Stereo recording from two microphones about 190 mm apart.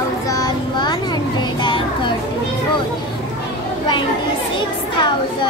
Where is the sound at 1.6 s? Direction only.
25° left (ahead or behind).